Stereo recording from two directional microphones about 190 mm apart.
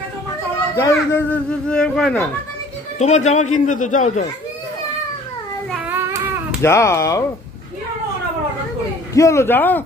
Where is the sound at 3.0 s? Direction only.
35° left (ahead or behind).